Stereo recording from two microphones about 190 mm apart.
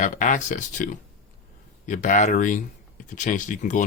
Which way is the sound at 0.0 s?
40° left (ahead or behind).